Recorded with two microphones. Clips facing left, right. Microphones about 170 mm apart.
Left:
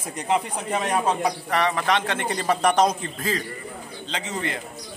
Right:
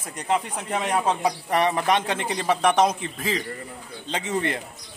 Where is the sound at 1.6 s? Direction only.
20° right (ahead or behind).